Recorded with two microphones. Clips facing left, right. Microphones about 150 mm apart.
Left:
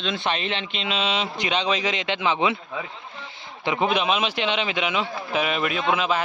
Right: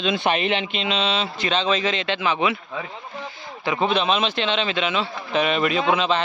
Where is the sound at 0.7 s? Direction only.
Centre (ahead or behind); by 2.6 s 20° left (ahead or behind).